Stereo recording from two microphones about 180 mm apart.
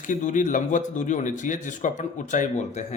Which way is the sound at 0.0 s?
45° left (ahead or behind).